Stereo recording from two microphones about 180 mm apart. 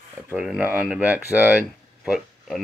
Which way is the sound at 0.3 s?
5° right (ahead or behind).